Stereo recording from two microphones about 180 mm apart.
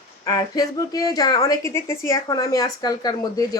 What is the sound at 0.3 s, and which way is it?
A woman's voice, 20° left (ahead or behind).